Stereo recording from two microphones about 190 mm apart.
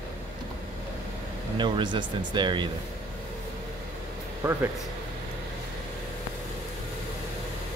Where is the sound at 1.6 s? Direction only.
25° right (ahead or behind).